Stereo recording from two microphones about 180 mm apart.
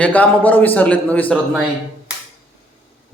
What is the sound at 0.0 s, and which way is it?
A man's voice, 10° left (ahead or behind).